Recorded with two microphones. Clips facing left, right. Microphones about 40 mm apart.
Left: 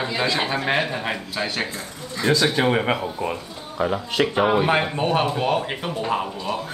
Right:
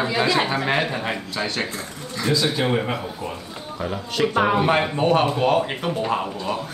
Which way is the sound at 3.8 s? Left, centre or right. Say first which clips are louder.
Left 4 dB; left.